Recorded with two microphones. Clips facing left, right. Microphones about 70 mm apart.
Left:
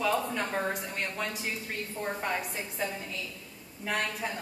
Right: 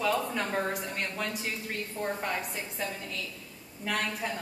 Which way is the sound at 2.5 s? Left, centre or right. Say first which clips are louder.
Left 1 dB; centre.